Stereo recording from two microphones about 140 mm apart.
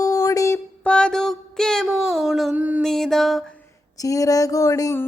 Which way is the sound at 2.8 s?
5° left (ahead or behind).